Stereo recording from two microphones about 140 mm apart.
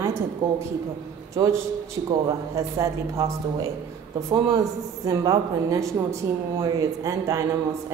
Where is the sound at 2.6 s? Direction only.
20° right (ahead or behind).